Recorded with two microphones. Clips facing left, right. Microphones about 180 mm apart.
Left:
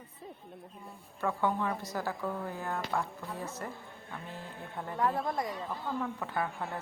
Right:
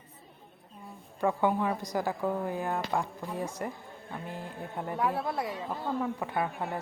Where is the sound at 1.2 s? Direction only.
15° right (ahead or behind).